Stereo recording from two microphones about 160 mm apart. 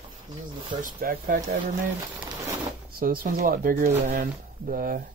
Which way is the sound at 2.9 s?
65° right (ahead or behind).